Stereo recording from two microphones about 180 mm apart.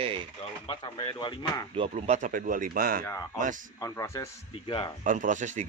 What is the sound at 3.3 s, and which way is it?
Speech, 45° right (ahead or behind).